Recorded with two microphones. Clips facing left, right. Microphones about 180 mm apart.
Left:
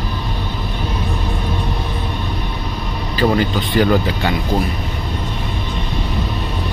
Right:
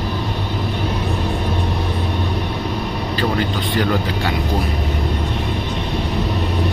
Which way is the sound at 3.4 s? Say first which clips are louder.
Left 3 dB; 5° left (ahead or behind).